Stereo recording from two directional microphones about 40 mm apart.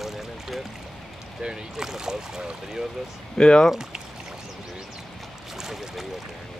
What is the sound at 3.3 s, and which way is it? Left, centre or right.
Speech, centre.